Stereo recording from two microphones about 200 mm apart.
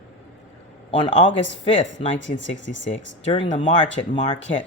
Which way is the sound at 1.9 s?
70° left (ahead or behind).